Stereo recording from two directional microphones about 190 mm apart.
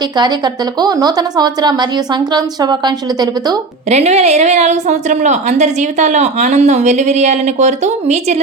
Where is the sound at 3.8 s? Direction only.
35° right (ahead or behind).